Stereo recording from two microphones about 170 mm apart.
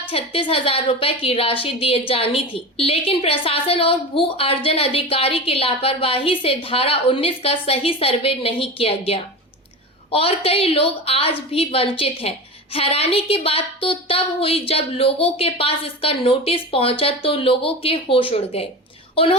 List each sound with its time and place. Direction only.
0.1 s a woman's voice: 30° left (ahead or behind)